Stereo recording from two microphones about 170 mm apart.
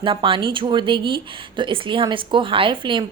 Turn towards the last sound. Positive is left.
turn(degrees=-30)  # may be behind; listen again after turning